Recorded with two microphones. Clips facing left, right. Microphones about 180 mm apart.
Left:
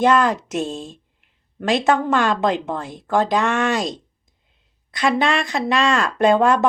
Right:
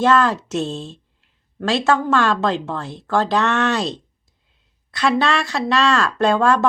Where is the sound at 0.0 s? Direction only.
15° left (ahead or behind).